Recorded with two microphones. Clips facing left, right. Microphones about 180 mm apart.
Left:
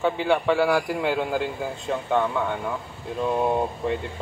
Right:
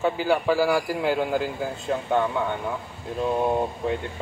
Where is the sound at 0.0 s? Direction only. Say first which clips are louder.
Even; 5° right (ahead or behind).